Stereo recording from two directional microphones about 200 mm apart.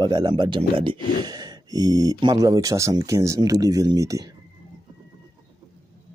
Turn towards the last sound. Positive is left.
turn(degrees=-15)  # may be behind; listen again after turning